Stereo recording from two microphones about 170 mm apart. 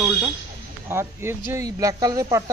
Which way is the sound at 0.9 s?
15° right (ahead or behind).